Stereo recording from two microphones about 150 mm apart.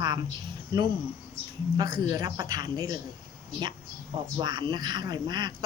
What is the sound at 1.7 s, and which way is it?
A woman's voice, 25° right (ahead or behind).